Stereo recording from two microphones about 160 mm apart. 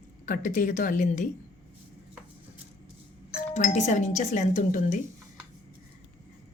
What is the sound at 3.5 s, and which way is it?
A woman's voice, 45° left (ahead or behind).